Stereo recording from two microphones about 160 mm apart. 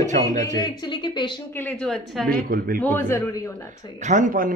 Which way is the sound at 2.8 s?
15° left (ahead or behind).